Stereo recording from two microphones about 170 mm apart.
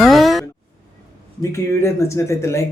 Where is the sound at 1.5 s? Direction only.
15° left (ahead or behind).